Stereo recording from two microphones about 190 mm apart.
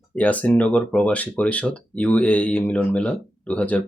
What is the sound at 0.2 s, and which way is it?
Speech, 5° left (ahead or behind).